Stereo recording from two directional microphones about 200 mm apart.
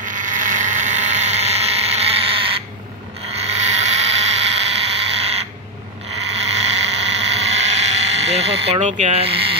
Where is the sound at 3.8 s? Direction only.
35° right (ahead or behind).